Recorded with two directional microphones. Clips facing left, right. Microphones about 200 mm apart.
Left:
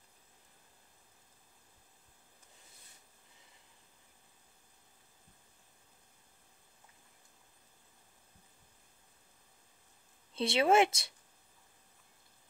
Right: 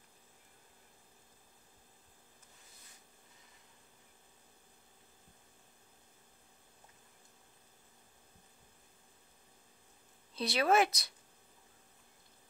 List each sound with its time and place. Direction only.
10.3 s speech: 25° left (ahead or behind)